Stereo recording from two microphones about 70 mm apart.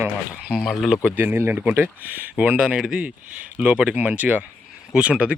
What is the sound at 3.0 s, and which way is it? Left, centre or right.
Speech, right.